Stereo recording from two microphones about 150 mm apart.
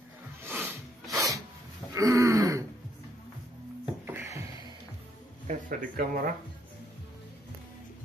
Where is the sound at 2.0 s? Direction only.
20° right (ahead or behind).